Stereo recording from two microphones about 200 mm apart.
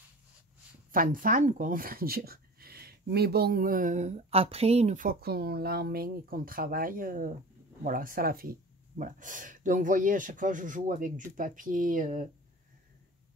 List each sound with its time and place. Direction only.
0.9 s speech: 45° right (ahead or behind)